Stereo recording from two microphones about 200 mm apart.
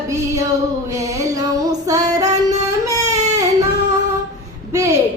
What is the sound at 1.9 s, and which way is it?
Female singing, 15° right (ahead or behind).